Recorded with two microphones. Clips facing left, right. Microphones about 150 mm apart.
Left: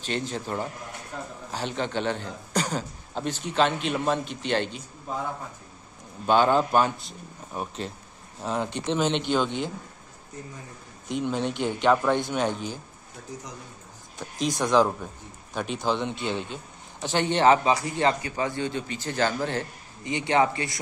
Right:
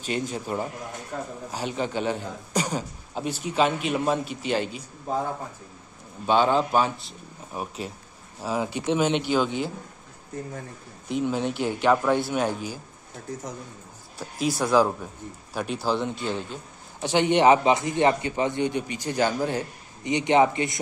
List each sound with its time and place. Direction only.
0.0 s a man's voice: 10° right (ahead or behind)
1.1 s a man's voice: 40° right (ahead or behind)
1.5 s a man's voice: 5° right (ahead or behind)
6.2 s a man's voice: centre (ahead or behind)
11.1 s a man's voice: 5° right (ahead or behind)
14.1 s a man's voice: 5° right (ahead or behind)